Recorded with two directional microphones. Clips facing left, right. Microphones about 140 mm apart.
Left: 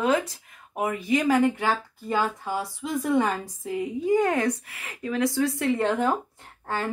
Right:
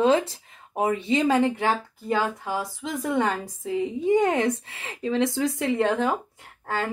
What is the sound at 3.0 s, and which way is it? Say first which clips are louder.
Speech: left 1 dB; 20° right (ahead or behind).